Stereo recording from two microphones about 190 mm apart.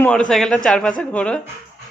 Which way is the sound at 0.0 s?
5° left (ahead or behind).